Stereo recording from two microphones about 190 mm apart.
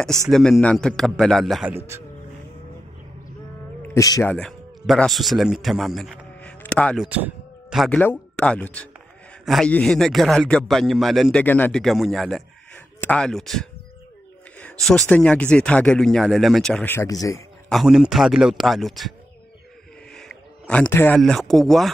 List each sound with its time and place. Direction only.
0.3 s a man's voice: 5° left (ahead or behind)
3.9 s speech: 15° left (ahead or behind)
4.3 s a man's voice: 5° left (ahead or behind)
7.1 s a man's voice: 10° right (ahead or behind); by 17.4 s 15° left (ahead or behind)
17.6 s a man's voice: centre (ahead or behind)
20.2 s a sound: 5° left (ahead or behind)
21.2 s a man's voice: centre (ahead or behind)